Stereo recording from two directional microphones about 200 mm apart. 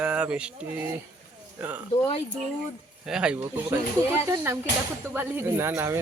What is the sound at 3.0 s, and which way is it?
A man's voice, 5° right (ahead or behind).